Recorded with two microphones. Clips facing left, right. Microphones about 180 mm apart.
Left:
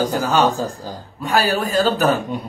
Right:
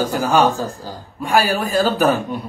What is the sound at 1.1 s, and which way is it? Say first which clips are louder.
A man's voice: right 1 dB; 10° right (ahead or behind).